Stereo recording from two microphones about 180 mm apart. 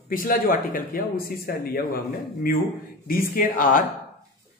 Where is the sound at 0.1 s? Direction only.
50° left (ahead or behind).